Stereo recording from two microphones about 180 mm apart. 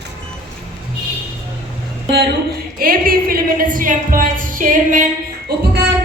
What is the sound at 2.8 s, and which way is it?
A woman's voice, 55° right (ahead or behind).